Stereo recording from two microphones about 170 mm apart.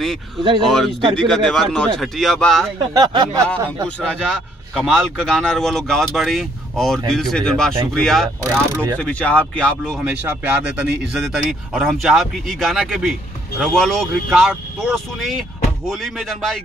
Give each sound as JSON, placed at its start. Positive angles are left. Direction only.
{"t": 0.7, "sound": "speech", "side_deg": 0}
{"t": 2.9, "sound": "speech", "side_deg": -25}
{"t": 3.8, "sound": "speech", "side_deg": 5}
{"t": 8.5, "sound": "speech", "side_deg": -10}
{"t": 8.9, "sound": "speech", "side_deg": 5}
{"t": 10.0, "sound": "speech", "side_deg": -10}